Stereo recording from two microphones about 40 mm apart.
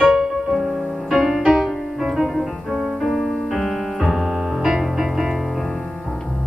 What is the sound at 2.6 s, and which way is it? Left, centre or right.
Music, centre.